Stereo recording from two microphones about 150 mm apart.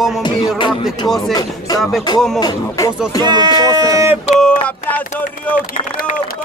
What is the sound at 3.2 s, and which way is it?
Speech, 30° right (ahead or behind).